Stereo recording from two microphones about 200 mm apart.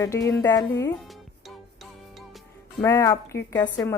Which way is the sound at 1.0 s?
Centre (ahead or behind).